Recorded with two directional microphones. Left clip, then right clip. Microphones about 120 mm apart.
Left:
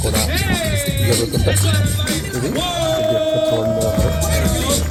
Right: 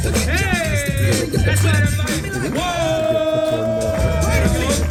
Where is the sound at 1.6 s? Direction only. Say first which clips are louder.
Right 1 dB; 40° right (ahead or behind).